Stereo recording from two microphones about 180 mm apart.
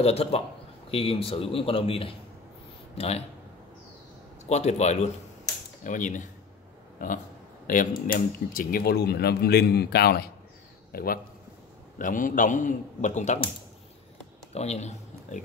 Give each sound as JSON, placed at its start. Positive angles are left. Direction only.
{"t": 0.0, "sound": "a man's voice", "side_deg": 35}
{"t": 4.5, "sound": "a man's voice", "side_deg": 40}
{"t": 14.5, "sound": "speech", "side_deg": 35}